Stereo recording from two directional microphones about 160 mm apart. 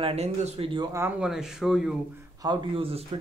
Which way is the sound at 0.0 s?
40° right (ahead or behind).